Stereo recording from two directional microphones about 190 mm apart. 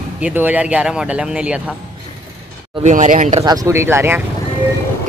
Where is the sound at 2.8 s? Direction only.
40° right (ahead or behind).